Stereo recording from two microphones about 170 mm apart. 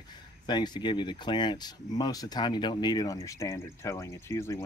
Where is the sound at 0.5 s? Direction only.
25° left (ahead or behind).